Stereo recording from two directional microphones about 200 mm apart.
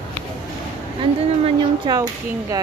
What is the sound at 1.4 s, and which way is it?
Speech, 20° right (ahead or behind).